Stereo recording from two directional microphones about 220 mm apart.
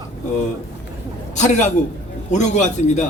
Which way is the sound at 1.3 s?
30° left (ahead or behind).